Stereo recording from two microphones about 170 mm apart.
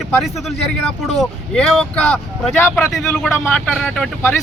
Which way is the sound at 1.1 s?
5° left (ahead or behind).